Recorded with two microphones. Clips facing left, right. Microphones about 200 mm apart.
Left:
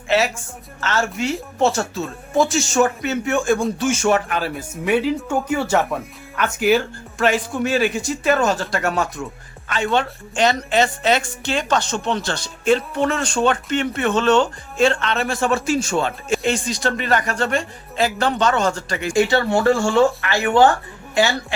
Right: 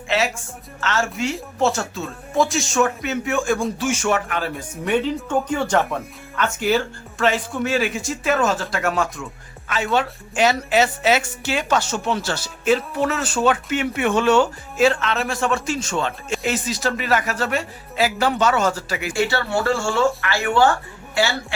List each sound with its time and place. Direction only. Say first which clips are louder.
0.1 s a woman's voice: left 3 dB; centre (ahead or behind)
16.4 s a woman's voice: right 2 dB; 5° right (ahead or behind)
19.1 s speech: left 5 dB; 15° left (ahead or behind)